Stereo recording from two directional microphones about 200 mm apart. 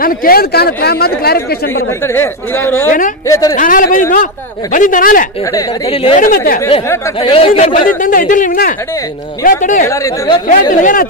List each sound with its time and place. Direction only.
0.0 s a man's voice: 45° left (ahead or behind)
2.1 s speech: 10° left (ahead or behind)
3.5 s a man's voice: 40° left (ahead or behind)
5.9 s speech: 30° left (ahead or behind)
6.2 s a man's voice: 45° left (ahead or behind)
7.2 s a man's voice: 30° left (ahead or behind)